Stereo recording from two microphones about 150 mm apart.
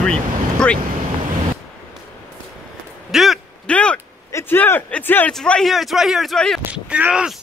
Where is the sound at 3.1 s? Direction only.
Centre (ahead or behind).